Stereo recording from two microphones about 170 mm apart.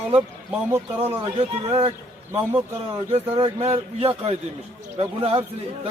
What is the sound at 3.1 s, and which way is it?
Speech, 35° right (ahead or behind).